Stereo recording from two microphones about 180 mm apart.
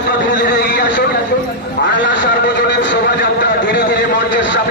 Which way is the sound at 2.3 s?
75° left (ahead or behind).